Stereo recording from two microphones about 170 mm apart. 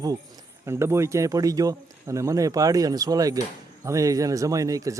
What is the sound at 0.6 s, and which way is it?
Speech, 15° right (ahead or behind).